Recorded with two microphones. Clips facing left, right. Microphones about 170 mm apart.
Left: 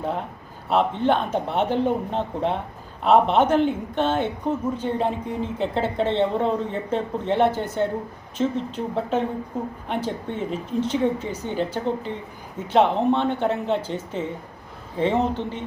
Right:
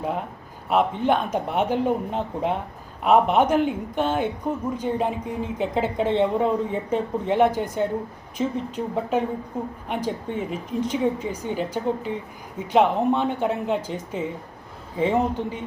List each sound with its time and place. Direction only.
0.7 s a woman's voice: 10° right (ahead or behind)